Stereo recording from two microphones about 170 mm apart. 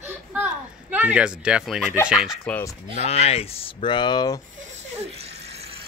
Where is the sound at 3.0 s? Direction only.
35° left (ahead or behind).